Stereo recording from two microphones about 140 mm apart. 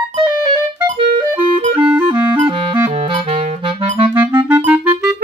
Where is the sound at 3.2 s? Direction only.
50° right (ahead or behind).